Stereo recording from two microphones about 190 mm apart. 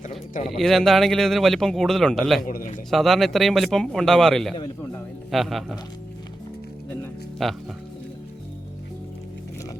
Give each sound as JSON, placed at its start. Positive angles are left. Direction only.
{"t": 0.4, "sound": "speech", "side_deg": 0}
{"t": 2.5, "sound": "a man's voice", "side_deg": 45}
{"t": 2.9, "sound": "speech", "side_deg": 0}
{"t": 7.4, "sound": "speech", "side_deg": 0}